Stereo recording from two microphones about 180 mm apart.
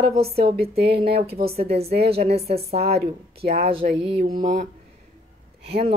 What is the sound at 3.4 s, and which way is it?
Speech, 60° right (ahead or behind).